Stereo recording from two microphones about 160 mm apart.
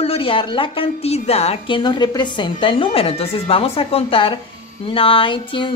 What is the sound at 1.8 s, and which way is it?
A woman's voice, 25° left (ahead or behind).